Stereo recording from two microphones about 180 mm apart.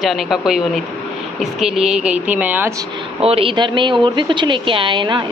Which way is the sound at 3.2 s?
35° right (ahead or behind).